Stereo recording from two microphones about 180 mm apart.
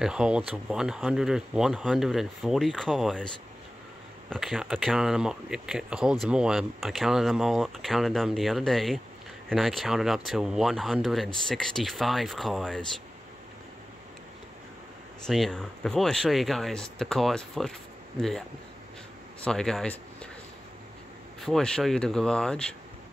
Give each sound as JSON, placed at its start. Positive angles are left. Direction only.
{"t": 0.0, "sound": "speech", "side_deg": -5}
{"t": 4.3, "sound": "speech", "side_deg": 0}
{"t": 15.2, "sound": "speech", "side_deg": 0}
{"t": 19.4, "sound": "speech", "side_deg": 5}
{"t": 21.5, "sound": "speech", "side_deg": 5}